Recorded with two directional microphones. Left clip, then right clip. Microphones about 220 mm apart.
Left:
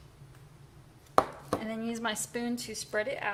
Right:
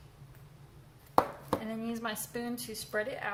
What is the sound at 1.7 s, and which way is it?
A woman's voice, 30° left (ahead or behind).